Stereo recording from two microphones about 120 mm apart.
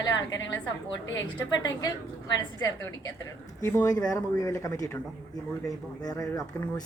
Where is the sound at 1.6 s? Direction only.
30° left (ahead or behind).